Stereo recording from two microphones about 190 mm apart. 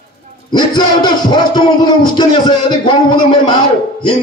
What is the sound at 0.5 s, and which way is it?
Speech, 20° left (ahead or behind).